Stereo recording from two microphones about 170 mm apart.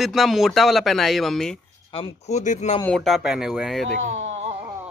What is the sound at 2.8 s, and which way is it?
Speech, centre (ahead or behind).